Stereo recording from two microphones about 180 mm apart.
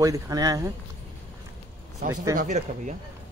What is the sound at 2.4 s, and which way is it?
Speech, 40° right (ahead or behind).